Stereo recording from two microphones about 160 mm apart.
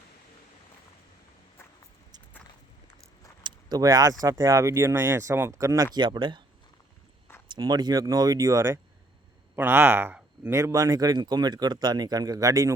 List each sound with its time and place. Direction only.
3.4 s keys jangling: 25° right (ahead or behind)
4.2 s speech: 20° right (ahead or behind)
7.5 s speech: 25° right (ahead or behind)